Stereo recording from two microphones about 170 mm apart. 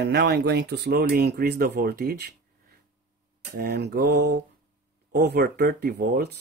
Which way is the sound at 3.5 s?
70° right (ahead or behind).